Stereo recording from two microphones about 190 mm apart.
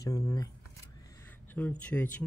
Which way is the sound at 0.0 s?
20° left (ahead or behind).